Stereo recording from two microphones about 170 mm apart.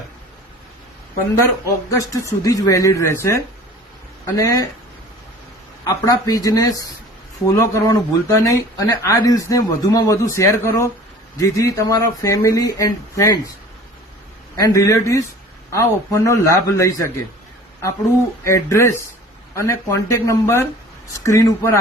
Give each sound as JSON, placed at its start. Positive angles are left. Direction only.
{"t": 1.4, "sound": "speech", "side_deg": 20}
{"t": 5.8, "sound": "speech", "side_deg": 20}
{"t": 14.5, "sound": "a man's voice", "side_deg": 20}
{"t": 18.4, "sound": "a man's voice", "side_deg": 15}